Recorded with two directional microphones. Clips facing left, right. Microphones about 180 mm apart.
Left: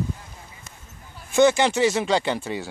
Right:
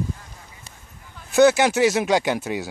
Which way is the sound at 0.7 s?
30° right (ahead or behind).